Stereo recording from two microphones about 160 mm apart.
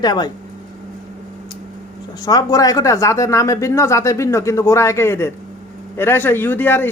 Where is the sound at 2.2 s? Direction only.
25° left (ahead or behind).